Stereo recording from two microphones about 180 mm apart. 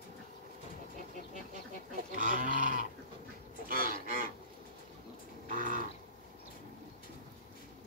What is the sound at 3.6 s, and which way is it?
Goose, 50° right (ahead or behind).